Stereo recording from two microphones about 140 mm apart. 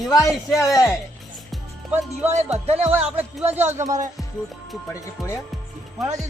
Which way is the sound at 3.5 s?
15° right (ahead or behind).